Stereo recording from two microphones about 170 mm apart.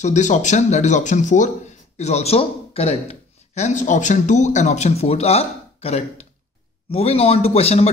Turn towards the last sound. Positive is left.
turn(degrees=35)  # may be behind; listen again after turning